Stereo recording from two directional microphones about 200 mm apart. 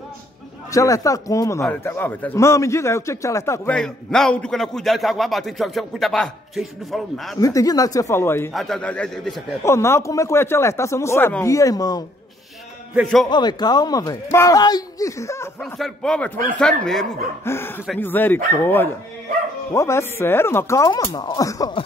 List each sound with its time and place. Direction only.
0.7 s a man's voice: 15° left (ahead or behind)
3.7 s a man's voice: 5° left (ahead or behind)
7.3 s a man's voice: 15° left (ahead or behind); by 9.4 s centre (ahead or behind)
9.7 s a man's voice: 15° left (ahead or behind)
12.9 s a man's voice: centre (ahead or behind)
13.3 s speech: 20° left (ahead or behind)
15.6 s a man's voice: centre (ahead or behind); by 21.8 s 20° left (ahead or behind)